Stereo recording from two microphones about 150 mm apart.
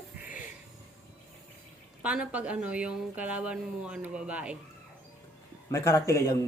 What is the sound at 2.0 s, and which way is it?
A woman's voice, 10° right (ahead or behind).